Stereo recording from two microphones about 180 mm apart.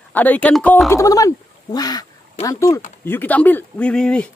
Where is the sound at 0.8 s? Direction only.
15° left (ahead or behind).